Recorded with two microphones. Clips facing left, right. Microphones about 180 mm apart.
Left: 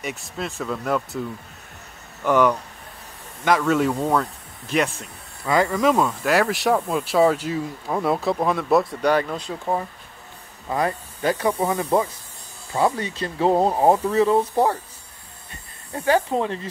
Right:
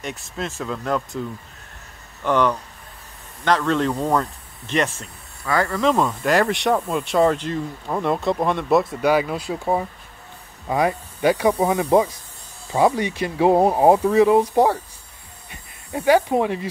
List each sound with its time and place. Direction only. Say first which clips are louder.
0.0 s speech: even; centre (ahead or behind)
2.2 s speech: left 1 dB; 10° left (ahead or behind)
5.4 s speech: left 1 dB; 20° left (ahead or behind); by 16.6 s 15° right (ahead or behind)